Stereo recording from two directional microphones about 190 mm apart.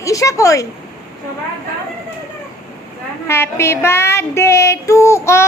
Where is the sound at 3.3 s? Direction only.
15° left (ahead or behind).